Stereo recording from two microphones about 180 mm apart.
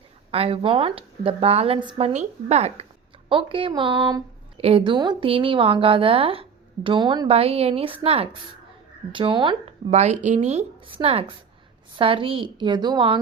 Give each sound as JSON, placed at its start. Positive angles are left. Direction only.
{"t": 0.3, "sound": "a woman's voice", "side_deg": -30}
{"t": 9.9, "sound": "a woman's voice", "side_deg": -40}